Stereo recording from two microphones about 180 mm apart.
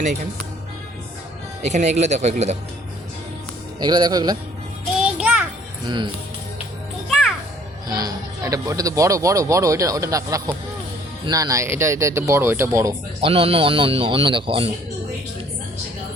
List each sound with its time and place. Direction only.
1.6 s speech: 40° right (ahead or behind)
3.8 s speech: 25° right (ahead or behind)
5.0 s music: 5° right (ahead or behind)
7.9 s speech: 20° right (ahead or behind)
13.2 s speech: 30° right (ahead or behind)